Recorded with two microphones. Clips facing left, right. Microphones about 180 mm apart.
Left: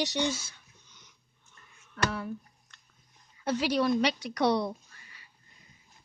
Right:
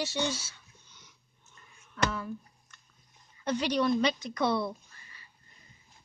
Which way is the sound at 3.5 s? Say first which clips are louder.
Left 1 dB; 10° left (ahead or behind).